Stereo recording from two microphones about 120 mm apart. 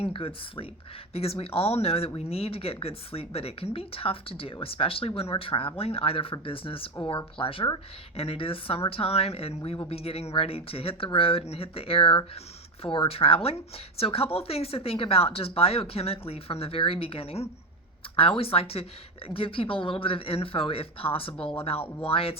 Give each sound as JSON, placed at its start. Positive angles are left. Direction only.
{"t": 0.0, "sound": "a woman's voice", "side_deg": 50}